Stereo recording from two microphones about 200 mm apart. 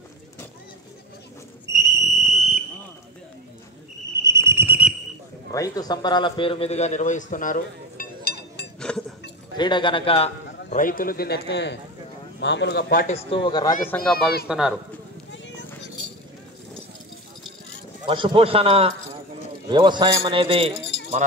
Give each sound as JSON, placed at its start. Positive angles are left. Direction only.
{"t": 1.7, "sound": "fire alarm", "side_deg": -15}
{"t": 2.3, "sound": "fire alarm", "side_deg": -35}
{"t": 4.2, "sound": "cricket", "side_deg": -15}
{"t": 5.5, "sound": "a man's voice", "side_deg": 15}
{"t": 8.7, "sound": "a sound", "side_deg": 5}
{"t": 9.6, "sound": "speech", "side_deg": 25}
{"t": 10.7, "sound": "a man's voice", "side_deg": 45}
{"t": 13.0, "sound": "speech", "side_deg": 30}
{"t": 13.8, "sound": "speech", "side_deg": 5}
{"t": 14.1, "sound": "speech", "side_deg": 50}
{"t": 14.5, "sound": "speech", "side_deg": -5}
{"t": 18.0, "sound": "a man's voice", "side_deg": -25}